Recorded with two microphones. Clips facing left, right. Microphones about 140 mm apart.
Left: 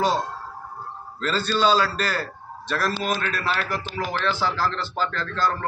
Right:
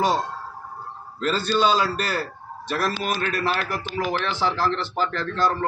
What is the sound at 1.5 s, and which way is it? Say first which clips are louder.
Speech: left 1 dB; 15° right (ahead or behind).